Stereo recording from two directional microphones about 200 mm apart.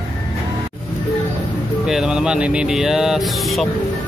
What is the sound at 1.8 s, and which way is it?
Speech, 5° right (ahead or behind).